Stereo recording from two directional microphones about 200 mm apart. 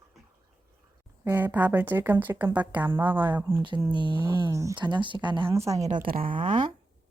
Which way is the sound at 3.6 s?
25° right (ahead or behind).